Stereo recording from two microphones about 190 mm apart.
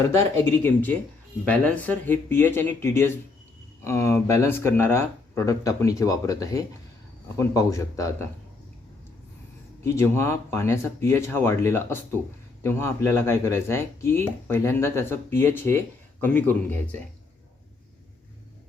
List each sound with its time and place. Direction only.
0.2 s speech: 10° left (ahead or behind)
9.8 s speech: 15° left (ahead or behind)